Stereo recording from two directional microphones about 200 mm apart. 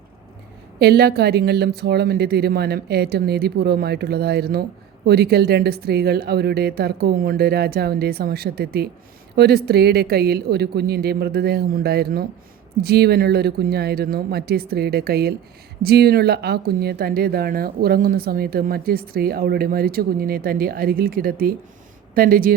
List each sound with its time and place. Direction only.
0.8 s a woman's voice: 55° right (ahead or behind)